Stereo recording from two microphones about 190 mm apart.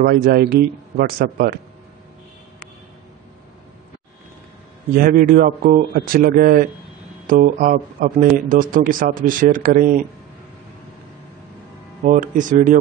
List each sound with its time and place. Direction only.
0.0 s speech: 50° right (ahead or behind)
4.9 s speech: 50° right (ahead or behind)
12.0 s speech: 40° right (ahead or behind)